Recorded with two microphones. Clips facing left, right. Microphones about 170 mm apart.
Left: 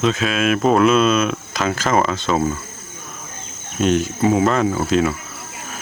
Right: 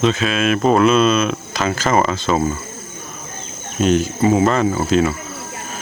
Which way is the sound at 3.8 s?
Centre (ahead or behind).